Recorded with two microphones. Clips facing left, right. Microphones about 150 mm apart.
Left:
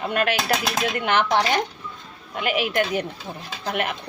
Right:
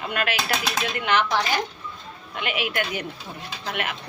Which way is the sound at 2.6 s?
35° left (ahead or behind).